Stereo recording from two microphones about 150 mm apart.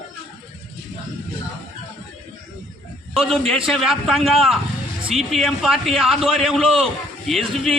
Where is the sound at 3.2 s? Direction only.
Centre (ahead or behind).